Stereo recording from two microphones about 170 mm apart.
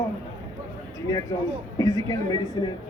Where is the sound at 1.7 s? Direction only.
20° left (ahead or behind).